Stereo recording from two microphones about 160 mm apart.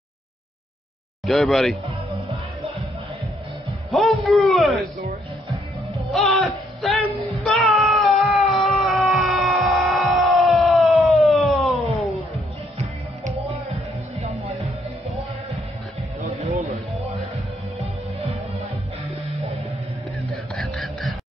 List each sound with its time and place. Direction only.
1.2 s speech: centre (ahead or behind)
3.9 s a man's voice: centre (ahead or behind)
6.0 s music: centre (ahead or behind)
7.4 s cat: centre (ahead or behind)
16.3 s a sound: 40° right (ahead or behind)
20.5 s a sound: centre (ahead or behind)